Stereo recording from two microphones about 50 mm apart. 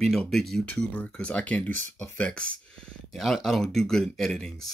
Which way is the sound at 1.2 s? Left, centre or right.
Left.